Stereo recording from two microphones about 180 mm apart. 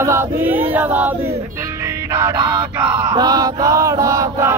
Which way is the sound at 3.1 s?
20° right (ahead or behind).